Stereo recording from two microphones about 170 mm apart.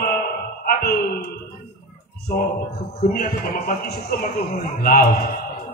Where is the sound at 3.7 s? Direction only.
60° left (ahead or behind).